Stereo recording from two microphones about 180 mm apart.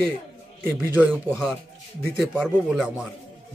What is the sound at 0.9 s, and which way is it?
A man's voice, 5° right (ahead or behind).